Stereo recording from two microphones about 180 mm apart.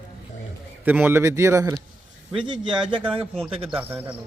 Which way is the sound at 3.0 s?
30° right (ahead or behind).